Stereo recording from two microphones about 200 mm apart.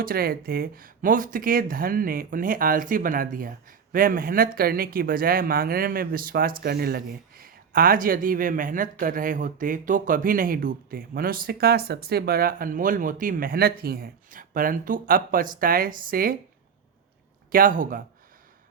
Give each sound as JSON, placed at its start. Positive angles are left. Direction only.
{"t": 0.0, "sound": "speech", "side_deg": -50}
{"t": 17.5, "sound": "speech", "side_deg": -40}